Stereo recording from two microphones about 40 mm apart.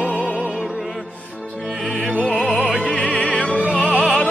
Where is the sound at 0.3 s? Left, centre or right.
Left.